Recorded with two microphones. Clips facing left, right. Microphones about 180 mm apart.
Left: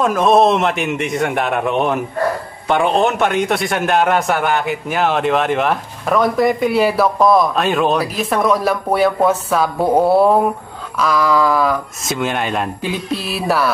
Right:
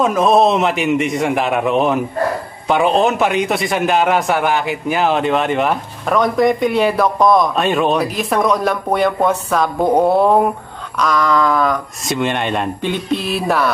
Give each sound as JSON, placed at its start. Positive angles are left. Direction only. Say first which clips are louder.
{"t": 0.0, "sound": "a man's voice", "louder": "even", "side_deg": 0}